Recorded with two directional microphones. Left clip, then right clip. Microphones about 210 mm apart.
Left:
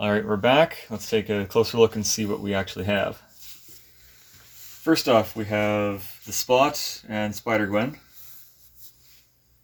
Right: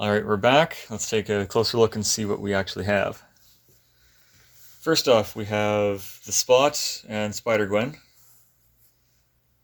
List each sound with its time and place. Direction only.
0.0 s speech: 40° right (ahead or behind)
4.8 s speech: 45° right (ahead or behind)